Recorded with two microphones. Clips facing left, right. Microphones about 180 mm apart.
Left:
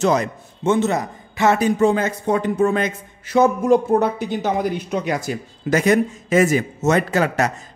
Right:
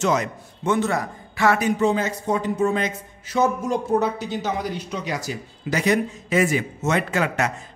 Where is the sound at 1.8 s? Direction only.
55° left (ahead or behind).